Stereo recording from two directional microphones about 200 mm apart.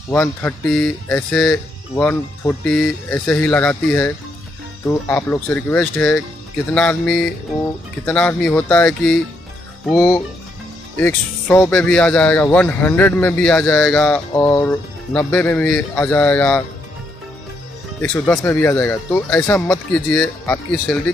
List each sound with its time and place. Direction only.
0.1 s speech: 10° left (ahead or behind)
18.0 s speech: 10° left (ahead or behind)